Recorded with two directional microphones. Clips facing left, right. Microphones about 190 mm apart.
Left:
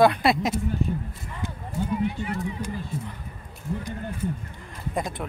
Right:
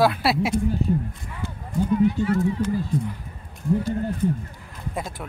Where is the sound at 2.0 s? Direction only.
20° left (ahead or behind).